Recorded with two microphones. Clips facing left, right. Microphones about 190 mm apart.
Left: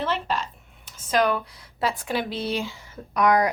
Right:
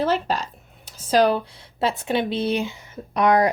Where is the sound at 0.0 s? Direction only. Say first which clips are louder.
Right 5 dB; 40° right (ahead or behind).